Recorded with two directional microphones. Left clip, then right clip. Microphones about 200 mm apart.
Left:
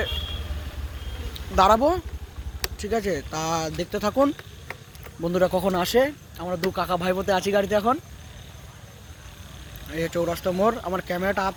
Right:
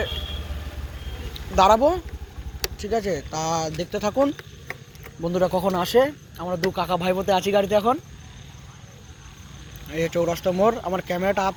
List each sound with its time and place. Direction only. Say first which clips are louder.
1.3 s vehicle: right 1 dB; 20° left (ahead or behind)
2.7 s speech: right 1 dB; 25° left (ahead or behind)
9.9 s speech: right 3 dB; 10° left (ahead or behind)